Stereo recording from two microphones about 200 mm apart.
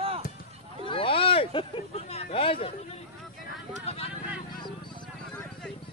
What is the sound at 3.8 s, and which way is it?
Vehicle, 30° left (ahead or behind).